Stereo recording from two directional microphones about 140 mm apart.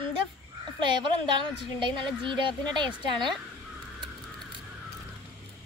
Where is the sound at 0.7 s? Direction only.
35° right (ahead or behind).